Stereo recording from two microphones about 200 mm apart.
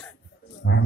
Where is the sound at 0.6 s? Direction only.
60° left (ahead or behind).